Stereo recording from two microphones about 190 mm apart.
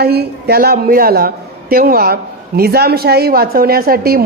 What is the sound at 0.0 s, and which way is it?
A woman's voice, 55° right (ahead or behind).